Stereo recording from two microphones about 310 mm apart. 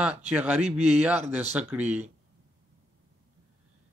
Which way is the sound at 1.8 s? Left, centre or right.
Right.